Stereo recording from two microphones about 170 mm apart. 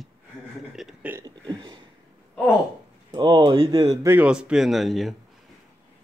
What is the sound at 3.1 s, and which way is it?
Speech, 30° right (ahead or behind).